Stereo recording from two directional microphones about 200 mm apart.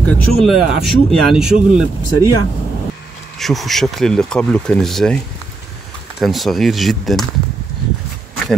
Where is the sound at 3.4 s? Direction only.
Centre (ahead or behind).